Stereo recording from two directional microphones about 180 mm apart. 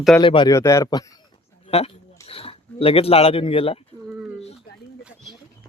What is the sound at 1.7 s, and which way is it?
Speech, 35° left (ahead or behind).